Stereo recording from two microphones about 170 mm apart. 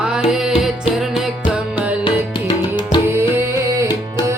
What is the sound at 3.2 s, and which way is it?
Music, 15° right (ahead or behind).